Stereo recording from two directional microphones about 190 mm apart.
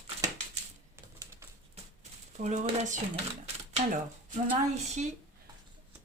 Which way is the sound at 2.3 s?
40° right (ahead or behind).